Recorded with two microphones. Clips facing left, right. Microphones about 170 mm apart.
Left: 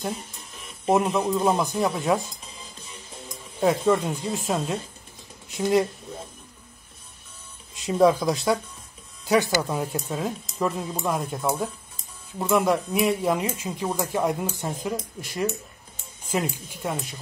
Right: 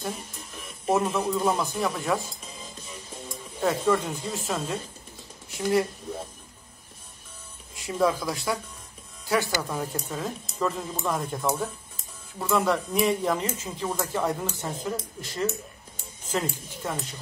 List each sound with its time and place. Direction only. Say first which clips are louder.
0.8 s speech: left 3 dB; 20° left (ahead or behind)
3.6 s speech: left 3 dB; 20° left (ahead or behind)
7.7 s speech: left 6 dB; 20° left (ahead or behind)